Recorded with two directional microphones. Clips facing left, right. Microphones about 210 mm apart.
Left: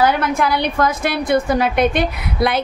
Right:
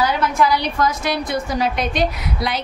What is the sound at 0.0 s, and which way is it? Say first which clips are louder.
A woman's voice: left 2 dB; 55° left (ahead or behind).